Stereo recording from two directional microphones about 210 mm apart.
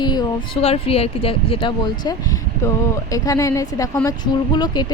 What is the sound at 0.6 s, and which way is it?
A woman's voice, 30° left (ahead or behind).